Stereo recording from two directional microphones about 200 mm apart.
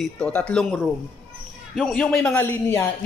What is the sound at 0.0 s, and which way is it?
A man's voice, 5° left (ahead or behind).